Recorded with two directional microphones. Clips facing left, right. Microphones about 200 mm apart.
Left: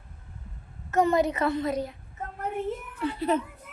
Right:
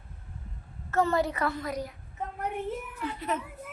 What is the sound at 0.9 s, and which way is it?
A woman's voice, 20° left (ahead or behind).